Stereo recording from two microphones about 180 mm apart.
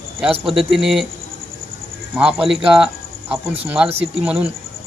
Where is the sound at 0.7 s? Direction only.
Centre (ahead or behind).